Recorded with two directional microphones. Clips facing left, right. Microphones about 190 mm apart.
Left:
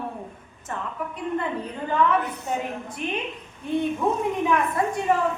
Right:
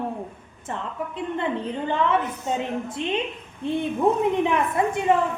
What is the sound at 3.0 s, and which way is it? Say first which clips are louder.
Speech: right 2 dB; 25° right (ahead or behind).